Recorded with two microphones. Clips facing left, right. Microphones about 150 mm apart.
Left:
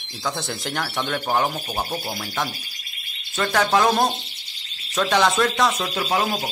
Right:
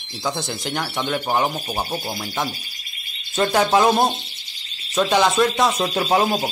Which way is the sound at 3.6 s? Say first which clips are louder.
Right 2 dB; 15° right (ahead or behind).